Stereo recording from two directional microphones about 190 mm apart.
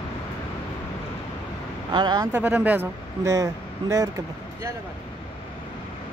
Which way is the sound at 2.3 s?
10° right (ahead or behind).